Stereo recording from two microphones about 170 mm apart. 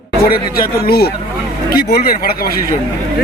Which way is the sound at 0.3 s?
60° left (ahead or behind).